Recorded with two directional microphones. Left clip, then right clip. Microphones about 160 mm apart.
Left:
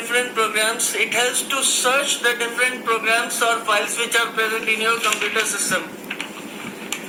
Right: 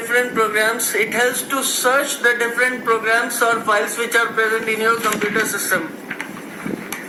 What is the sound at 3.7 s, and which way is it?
A man's voice, 20° right (ahead or behind).